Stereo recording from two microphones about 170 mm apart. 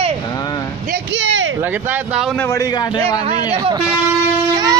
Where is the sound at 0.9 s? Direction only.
90° right.